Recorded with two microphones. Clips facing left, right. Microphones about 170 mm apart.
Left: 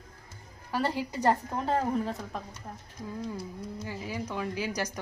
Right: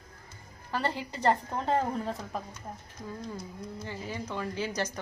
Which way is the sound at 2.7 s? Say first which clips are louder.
Right 1 dB; 15° right (ahead or behind).